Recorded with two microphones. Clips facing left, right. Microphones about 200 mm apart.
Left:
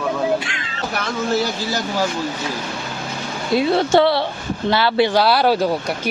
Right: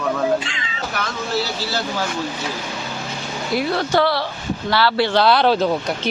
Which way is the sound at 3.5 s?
25° left (ahead or behind).